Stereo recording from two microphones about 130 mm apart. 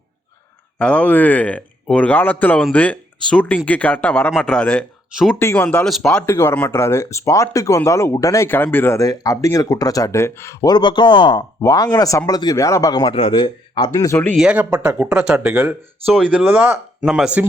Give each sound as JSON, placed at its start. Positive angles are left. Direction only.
{"t": 0.8, "sound": "speech", "side_deg": 10}
{"t": 5.4, "sound": "speech", "side_deg": 20}
{"t": 5.6, "sound": "speech", "side_deg": 10}
{"t": 6.2, "sound": "speech", "side_deg": 20}
{"t": 13.1, "sound": "speech", "side_deg": 45}
{"t": 14.3, "sound": "speech", "side_deg": -10}